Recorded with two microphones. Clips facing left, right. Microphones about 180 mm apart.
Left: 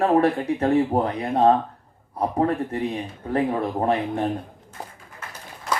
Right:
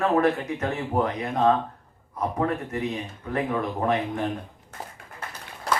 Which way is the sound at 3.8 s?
30° left (ahead or behind).